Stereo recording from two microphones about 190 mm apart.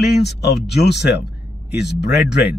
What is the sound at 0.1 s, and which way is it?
Speech, 60° left (ahead or behind).